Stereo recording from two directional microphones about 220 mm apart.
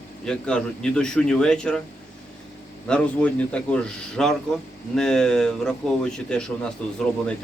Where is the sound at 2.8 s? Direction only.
5° left (ahead or behind).